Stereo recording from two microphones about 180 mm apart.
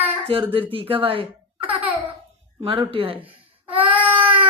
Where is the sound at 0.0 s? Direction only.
30° right (ahead or behind).